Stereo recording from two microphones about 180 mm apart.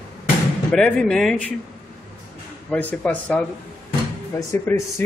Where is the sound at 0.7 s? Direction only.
5° left (ahead or behind).